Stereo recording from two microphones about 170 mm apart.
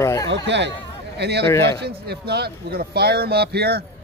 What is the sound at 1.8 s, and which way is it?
A man's voice, 70° right (ahead or behind).